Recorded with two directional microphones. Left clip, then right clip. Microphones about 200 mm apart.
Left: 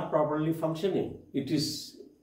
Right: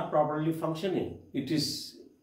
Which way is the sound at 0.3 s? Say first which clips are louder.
Left 1 dB; 15° right (ahead or behind).